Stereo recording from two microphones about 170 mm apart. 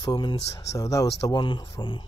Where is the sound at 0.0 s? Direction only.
30° left (ahead or behind).